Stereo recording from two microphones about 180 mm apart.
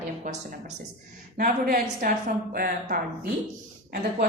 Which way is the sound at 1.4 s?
45° right (ahead or behind).